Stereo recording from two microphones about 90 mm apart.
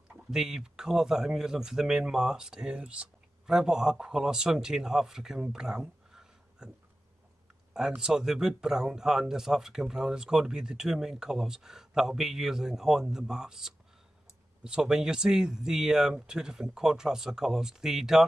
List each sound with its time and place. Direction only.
0.1 s speech: 5° right (ahead or behind)
7.7 s speech: 5° right (ahead or behind)